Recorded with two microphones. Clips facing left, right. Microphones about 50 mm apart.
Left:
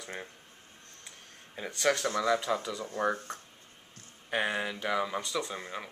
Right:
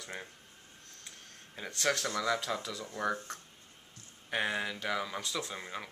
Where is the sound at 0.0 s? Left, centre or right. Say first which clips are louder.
Left 2 dB; centre.